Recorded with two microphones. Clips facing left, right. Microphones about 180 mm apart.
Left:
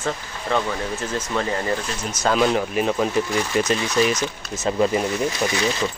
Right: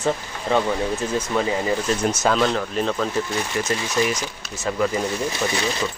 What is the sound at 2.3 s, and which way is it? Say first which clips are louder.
Speech: left 3 dB; 10° left (ahead or behind).